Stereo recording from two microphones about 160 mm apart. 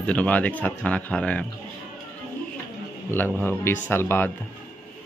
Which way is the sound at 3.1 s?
10° left (ahead or behind).